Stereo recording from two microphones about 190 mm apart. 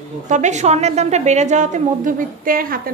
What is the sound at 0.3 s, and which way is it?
A woman's voice, 40° right (ahead or behind).